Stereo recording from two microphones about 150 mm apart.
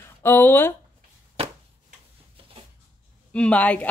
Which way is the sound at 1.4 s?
40° right (ahead or behind).